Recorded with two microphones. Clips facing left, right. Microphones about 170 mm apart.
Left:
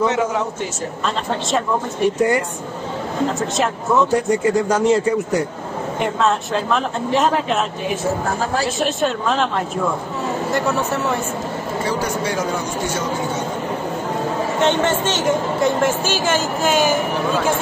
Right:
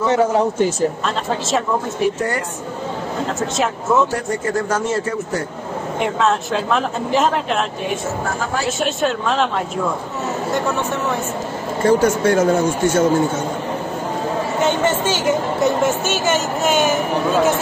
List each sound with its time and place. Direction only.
0.1 s a man's voice: 35° right (ahead or behind)
1.0 s speech: centre (ahead or behind)
3.3 s speech: centre (ahead or behind)
4.3 s a man's voice: 15° left (ahead or behind)
5.9 s speech: centre (ahead or behind)
11.8 s speech: 50° right (ahead or behind)
14.6 s speech: 5° right (ahead or behind)